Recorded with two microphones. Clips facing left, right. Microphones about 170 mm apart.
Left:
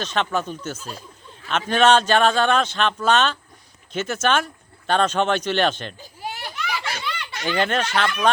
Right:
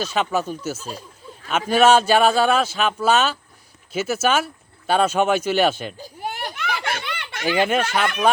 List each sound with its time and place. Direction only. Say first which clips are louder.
0.0 s speech: right 2 dB; 10° right (ahead or behind)
6.0 s a sound: right 3 dB; 50° right (ahead or behind)
7.4 s speech: right 3 dB; 10° right (ahead or behind)